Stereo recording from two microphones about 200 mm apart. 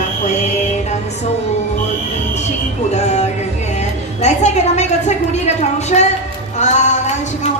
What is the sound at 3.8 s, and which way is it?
A woman's voice, 35° left (ahead or behind).